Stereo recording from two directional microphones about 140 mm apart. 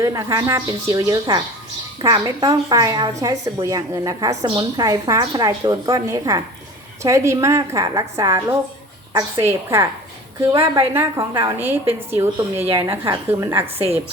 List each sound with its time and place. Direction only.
0.0 s a woman's voice: 25° right (ahead or behind)
10.5 s a woman's voice: 40° right (ahead or behind)
11.5 s a woman's voice: 15° right (ahead or behind)